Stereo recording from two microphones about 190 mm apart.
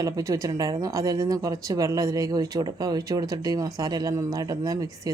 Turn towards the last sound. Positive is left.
turn(degrees=-20)  # may be behind; listen again after turning